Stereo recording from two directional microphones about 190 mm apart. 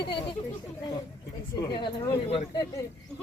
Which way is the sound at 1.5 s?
20° left (ahead or behind).